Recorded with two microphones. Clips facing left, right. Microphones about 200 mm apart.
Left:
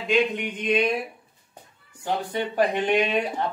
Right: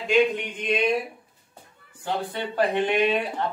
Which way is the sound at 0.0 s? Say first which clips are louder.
Right 2 dB; 5° left (ahead or behind).